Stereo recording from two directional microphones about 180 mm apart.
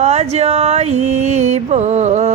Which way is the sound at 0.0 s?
35° right (ahead or behind).